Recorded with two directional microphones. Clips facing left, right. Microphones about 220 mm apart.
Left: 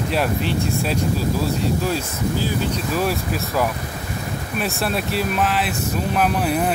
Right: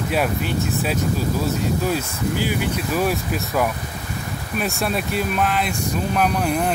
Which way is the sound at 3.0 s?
Centre (ahead or behind).